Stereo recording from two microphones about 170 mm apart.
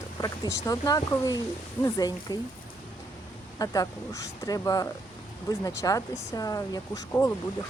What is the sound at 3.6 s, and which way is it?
Speech, 20° left (ahead or behind).